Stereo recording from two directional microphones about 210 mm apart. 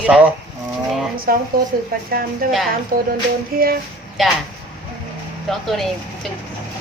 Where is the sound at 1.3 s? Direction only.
45° right (ahead or behind).